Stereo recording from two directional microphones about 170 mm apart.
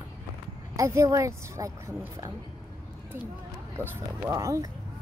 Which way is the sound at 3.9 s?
15° right (ahead or behind).